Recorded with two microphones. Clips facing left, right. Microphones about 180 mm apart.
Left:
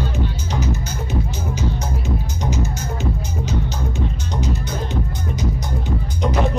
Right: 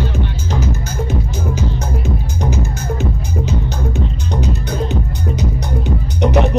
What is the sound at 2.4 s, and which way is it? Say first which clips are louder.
Music: right 3 dB; 55° right (ahead or behind).